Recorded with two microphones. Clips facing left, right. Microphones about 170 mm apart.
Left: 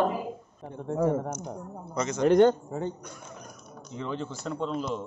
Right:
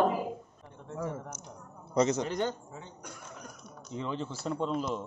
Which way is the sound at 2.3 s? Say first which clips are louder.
Left 13 dB; 60° left (ahead or behind).